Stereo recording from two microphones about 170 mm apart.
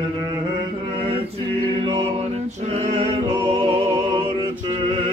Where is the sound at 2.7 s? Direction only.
40° right (ahead or behind).